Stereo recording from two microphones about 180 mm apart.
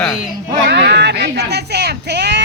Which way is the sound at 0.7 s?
70° right (ahead or behind).